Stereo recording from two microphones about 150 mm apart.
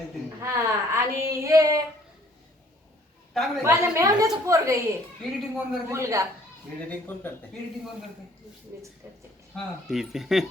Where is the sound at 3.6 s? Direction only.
20° right (ahead or behind).